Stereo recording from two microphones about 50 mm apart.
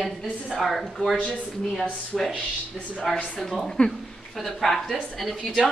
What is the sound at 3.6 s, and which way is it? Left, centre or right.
A woman's voice, centre.